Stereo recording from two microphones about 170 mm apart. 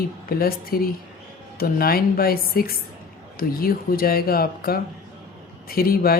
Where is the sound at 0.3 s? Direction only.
60° left (ahead or behind).